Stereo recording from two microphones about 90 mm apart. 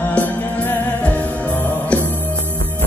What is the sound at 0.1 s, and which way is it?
Music, 20° left (ahead or behind).